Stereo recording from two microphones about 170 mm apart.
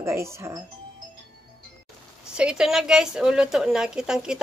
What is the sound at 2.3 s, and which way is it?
A woman's voice, 5° right (ahead or behind).